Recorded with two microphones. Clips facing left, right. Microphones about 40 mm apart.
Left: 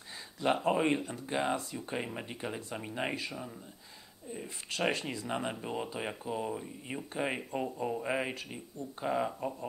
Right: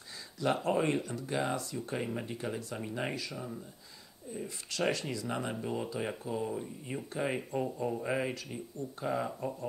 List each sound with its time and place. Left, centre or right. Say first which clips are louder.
0.4 s speech: left 1 dB; left
4.3 s speech: even; left